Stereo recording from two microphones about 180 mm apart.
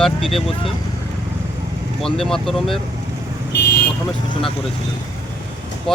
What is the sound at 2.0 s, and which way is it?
Speech, centre (ahead or behind).